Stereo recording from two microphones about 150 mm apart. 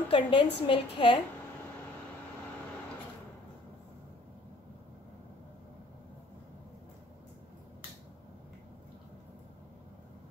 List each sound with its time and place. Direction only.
0.1 s a woman's voice: 35° left (ahead or behind)